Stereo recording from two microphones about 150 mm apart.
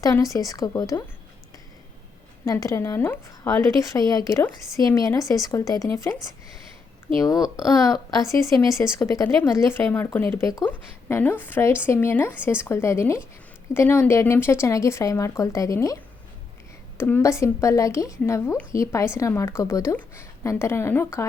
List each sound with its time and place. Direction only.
0.0 s speech: 20° left (ahead or behind)
2.4 s speech: 20° left (ahead or behind)
7.2 s a woman's voice: 25° left (ahead or behind)
17.0 s a woman's voice: 15° left (ahead or behind)